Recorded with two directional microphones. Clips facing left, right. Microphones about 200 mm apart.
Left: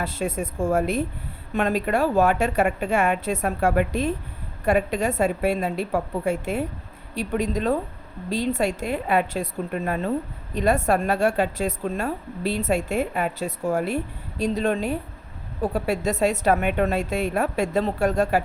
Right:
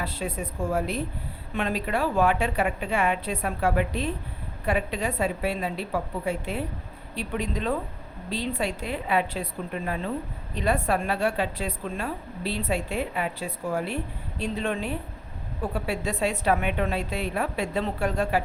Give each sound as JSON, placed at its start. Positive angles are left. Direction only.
{"t": 0.0, "sound": "a woman's voice", "side_deg": 45}